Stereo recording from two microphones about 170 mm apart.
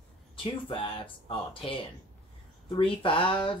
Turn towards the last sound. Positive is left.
turn(degrees=30)  # may be behind; listen again after turning